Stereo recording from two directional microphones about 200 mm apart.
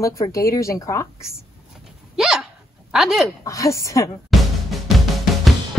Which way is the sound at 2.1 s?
5° right (ahead or behind).